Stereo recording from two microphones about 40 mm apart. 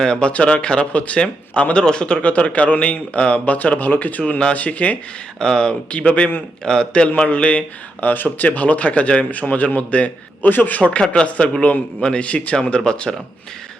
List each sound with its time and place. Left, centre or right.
0.0 s speech: left
2.3 s speech: left
3.1 s speech: left
4.2 s speech: left
5.4 s speech: centre
5.9 s speech: left
6.7 s a man's voice: centre
7.3 s speech: left
8.0 s speech: left
12.2 s speech: left
12.7 s speech: left